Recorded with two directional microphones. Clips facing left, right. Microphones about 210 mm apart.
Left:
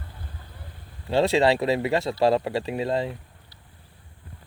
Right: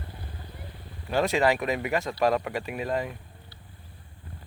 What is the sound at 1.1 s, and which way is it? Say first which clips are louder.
Speech: left 4 dB; 30° left (ahead or behind).